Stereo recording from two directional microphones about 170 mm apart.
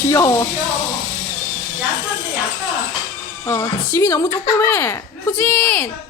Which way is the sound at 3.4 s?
15° left (ahead or behind).